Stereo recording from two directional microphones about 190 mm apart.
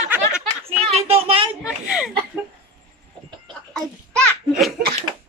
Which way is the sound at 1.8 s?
5° right (ahead or behind).